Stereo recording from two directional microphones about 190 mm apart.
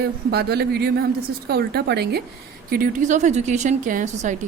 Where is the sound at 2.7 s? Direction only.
45° right (ahead or behind).